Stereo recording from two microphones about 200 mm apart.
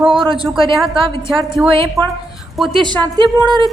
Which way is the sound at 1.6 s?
5° right (ahead or behind).